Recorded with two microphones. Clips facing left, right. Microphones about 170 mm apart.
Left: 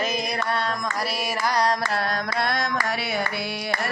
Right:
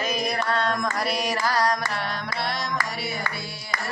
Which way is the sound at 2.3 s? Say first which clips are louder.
Left 2 dB; 50° left (ahead or behind).